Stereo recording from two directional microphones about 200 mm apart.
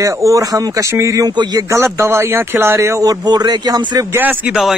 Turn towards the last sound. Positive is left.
turn(degrees=0)  # may be behind; listen again after turning